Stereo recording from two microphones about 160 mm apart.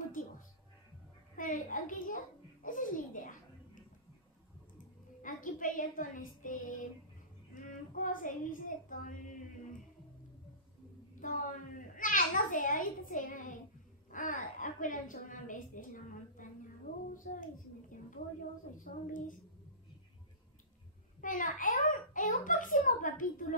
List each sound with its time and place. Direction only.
1.3 s babbling: 55° left (ahead or behind)
5.2 s speech: 55° left (ahead or behind)
7.5 s child singing: 55° left (ahead or behind)
11.1 s a child's voice: 55° left (ahead or behind)
18.8 s a child's voice: 55° left (ahead or behind)
21.2 s a child's voice: 55° left (ahead or behind)